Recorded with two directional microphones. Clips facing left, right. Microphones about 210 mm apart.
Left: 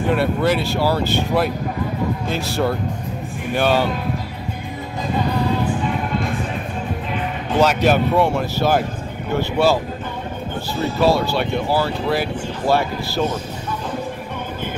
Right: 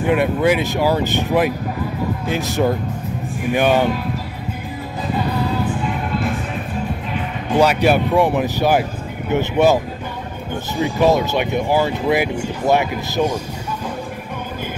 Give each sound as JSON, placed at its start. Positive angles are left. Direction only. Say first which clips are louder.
{"t": 0.1, "sound": "speech", "louder": "right 3 dB", "side_deg": -10}
{"t": 7.8, "sound": "speech", "louder": "right 1 dB", "side_deg": -10}
{"t": 10.8, "sound": "speech", "louder": "right 2 dB", "side_deg": -15}